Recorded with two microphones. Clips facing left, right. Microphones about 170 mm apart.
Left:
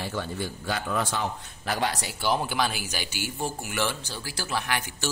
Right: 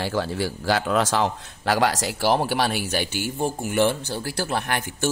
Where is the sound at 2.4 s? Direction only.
65° right (ahead or behind).